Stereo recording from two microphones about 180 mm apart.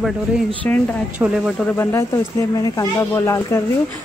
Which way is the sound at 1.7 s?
15° left (ahead or behind).